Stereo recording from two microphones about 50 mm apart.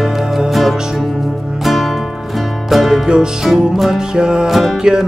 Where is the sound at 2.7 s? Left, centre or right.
Centre.